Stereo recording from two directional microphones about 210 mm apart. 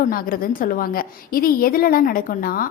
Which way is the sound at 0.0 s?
45° left (ahead or behind).